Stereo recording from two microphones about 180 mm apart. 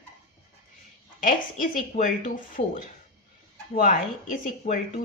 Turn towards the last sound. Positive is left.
turn(degrees=45)  # may be behind; listen again after turning